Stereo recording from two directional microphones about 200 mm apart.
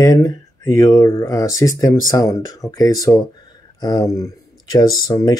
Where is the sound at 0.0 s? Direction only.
15° left (ahead or behind).